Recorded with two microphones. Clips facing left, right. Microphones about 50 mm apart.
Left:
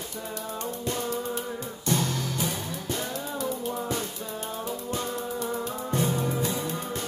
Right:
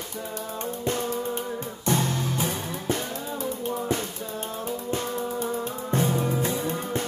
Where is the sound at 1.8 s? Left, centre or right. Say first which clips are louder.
Right 2 dB; right.